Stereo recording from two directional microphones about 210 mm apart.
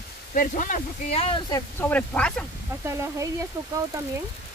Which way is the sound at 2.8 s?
15° right (ahead or behind).